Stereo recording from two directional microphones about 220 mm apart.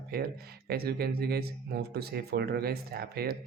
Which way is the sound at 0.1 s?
45° right (ahead or behind).